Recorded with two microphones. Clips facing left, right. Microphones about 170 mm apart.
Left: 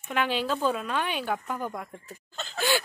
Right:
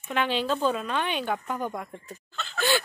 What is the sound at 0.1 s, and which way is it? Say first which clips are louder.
A woman's voice: right 1 dB; 5° left (ahead or behind).